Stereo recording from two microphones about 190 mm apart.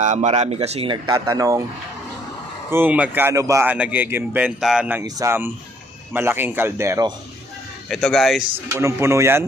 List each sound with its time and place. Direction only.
0.0 s speech: 40° right (ahead or behind); by 1.6 s 15° right (ahead or behind)
2.7 s speech: 10° right (ahead or behind)
5.0 s speech: 15° right (ahead or behind)
7.9 s speech: centre (ahead or behind)
8.7 s speech: 15° right (ahead or behind)